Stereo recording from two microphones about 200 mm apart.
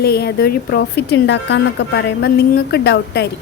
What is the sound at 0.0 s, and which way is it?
A woman's voice, 55° left (ahead or behind).